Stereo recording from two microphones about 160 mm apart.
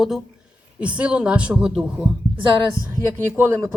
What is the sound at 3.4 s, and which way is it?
Speech, 15° right (ahead or behind).